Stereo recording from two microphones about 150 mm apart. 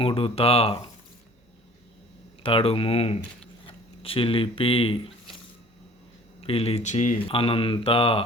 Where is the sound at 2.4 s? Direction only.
40° left (ahead or behind).